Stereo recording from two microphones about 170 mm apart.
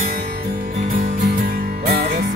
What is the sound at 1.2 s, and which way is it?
Music, 65° right (ahead or behind).